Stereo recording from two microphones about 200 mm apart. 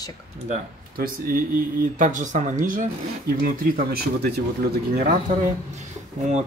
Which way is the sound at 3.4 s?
50° right (ahead or behind).